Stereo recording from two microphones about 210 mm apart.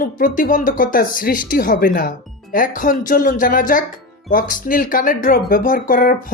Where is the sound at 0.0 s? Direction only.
40° left (ahead or behind).